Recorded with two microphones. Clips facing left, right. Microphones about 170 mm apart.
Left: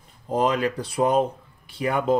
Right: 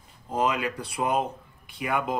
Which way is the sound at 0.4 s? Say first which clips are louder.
Left 4 dB; 35° left (ahead or behind).